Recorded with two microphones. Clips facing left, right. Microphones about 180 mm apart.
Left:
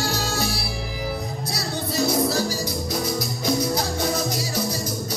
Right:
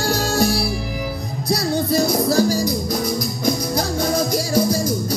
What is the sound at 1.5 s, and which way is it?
Music, 45° right (ahead or behind).